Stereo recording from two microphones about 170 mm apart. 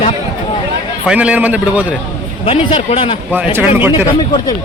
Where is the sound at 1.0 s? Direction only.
5° right (ahead or behind).